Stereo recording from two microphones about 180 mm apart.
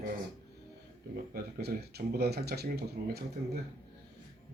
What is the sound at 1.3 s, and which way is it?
Speech, 60° right (ahead or behind).